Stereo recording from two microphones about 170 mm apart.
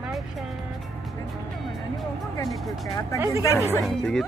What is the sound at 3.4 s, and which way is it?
Speech, 15° left (ahead or behind).